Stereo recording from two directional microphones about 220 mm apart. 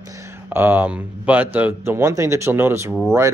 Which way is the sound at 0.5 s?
10° right (ahead or behind).